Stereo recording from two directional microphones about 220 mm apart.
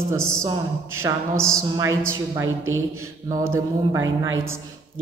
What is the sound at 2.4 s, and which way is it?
Speech, 65° right (ahead or behind).